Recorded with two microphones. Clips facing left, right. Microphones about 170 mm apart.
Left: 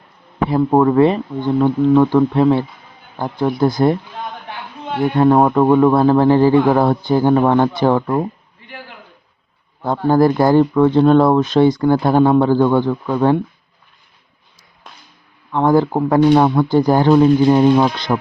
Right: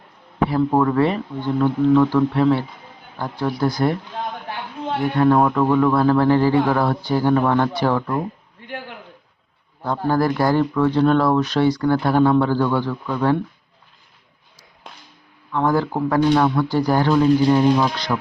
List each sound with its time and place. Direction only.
0.5 s speech: 25° left (ahead or behind)
5.1 s speech: 25° left (ahead or behind)
9.8 s speech: 25° left (ahead or behind)
15.5 s speech: 20° left (ahead or behind)
17.1 s speech: 35° left (ahead or behind)